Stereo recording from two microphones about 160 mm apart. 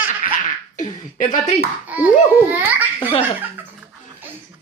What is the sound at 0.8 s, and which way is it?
Beatboxing, 55° left (ahead or behind).